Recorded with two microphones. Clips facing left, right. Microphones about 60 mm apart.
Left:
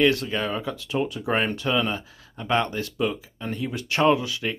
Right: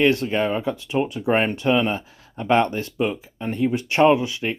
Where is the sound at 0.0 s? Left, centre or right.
Right.